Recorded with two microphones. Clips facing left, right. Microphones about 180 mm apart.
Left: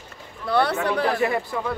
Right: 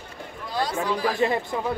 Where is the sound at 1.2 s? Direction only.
25° right (ahead or behind).